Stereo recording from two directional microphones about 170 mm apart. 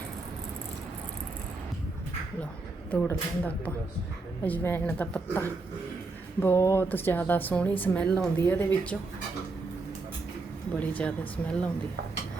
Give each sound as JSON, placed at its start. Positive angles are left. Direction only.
{"t": 2.9, "sound": "speech", "side_deg": 10}
{"t": 10.8, "sound": "speech", "side_deg": 10}